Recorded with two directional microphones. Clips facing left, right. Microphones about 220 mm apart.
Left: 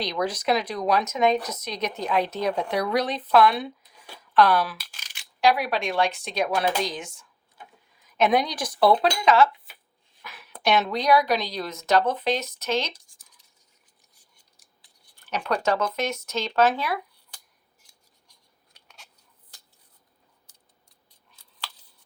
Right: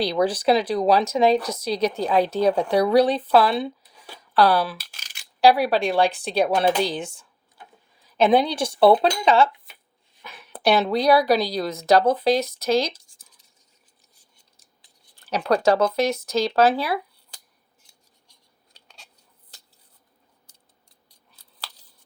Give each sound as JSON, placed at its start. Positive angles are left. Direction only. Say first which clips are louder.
{"t": 0.0, "sound": "a woman's voice", "louder": "right 6 dB", "side_deg": -30}
{"t": 15.3, "sound": "a woman's voice", "louder": "right 6 dB", "side_deg": -35}
{"t": 18.7, "sound": "a sound", "louder": "right 1 dB", "side_deg": -25}